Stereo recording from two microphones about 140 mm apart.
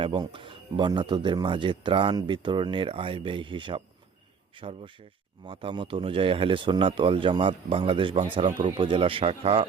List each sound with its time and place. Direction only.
0.0 s a man's voice: 35° right (ahead or behind)